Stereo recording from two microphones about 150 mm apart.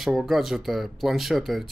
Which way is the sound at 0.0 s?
Centre (ahead or behind).